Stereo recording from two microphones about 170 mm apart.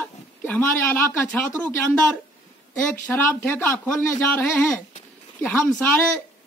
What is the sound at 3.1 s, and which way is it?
A woman's voice, 10° left (ahead or behind).